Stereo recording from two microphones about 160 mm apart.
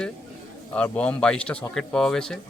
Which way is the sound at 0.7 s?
10° left (ahead or behind).